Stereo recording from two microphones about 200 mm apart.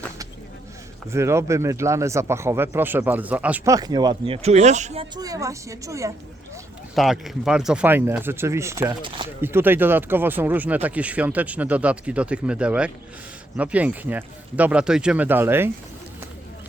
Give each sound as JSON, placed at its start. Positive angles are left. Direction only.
{"t": 1.1, "sound": "speech", "side_deg": -15}
{"t": 5.1, "sound": "speech", "side_deg": -15}
{"t": 6.9, "sound": "speech", "side_deg": 0}
{"t": 9.4, "sound": "speech", "side_deg": -10}